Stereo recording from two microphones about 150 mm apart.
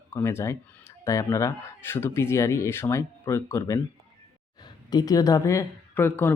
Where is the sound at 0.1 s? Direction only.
15° left (ahead or behind).